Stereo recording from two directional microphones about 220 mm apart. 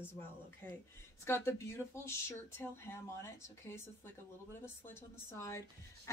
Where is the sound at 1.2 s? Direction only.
10° left (ahead or behind).